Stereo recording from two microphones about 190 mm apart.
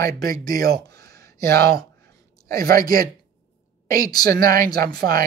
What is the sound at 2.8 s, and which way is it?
Speech, 50° right (ahead or behind).